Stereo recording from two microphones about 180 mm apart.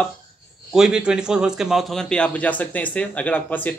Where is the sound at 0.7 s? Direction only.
5° right (ahead or behind).